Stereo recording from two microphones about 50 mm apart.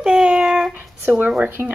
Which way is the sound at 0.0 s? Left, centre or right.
Centre.